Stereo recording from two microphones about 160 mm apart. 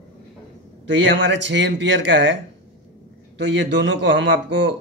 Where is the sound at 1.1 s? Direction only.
90° right.